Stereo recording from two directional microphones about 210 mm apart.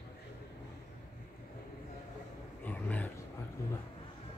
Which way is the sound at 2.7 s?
5° left (ahead or behind).